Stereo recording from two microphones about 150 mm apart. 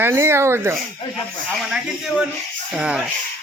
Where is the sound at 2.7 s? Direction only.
5° right (ahead or behind).